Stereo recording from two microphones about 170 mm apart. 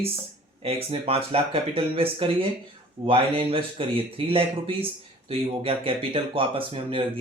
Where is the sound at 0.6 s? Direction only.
35° right (ahead or behind).